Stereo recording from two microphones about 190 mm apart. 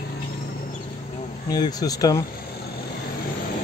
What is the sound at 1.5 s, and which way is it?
Speech, 20° left (ahead or behind).